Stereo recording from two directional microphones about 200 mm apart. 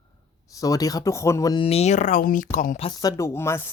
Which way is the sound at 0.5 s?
15° left (ahead or behind).